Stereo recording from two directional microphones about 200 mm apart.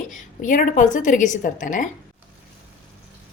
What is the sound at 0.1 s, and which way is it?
A woman's voice, 40° left (ahead or behind).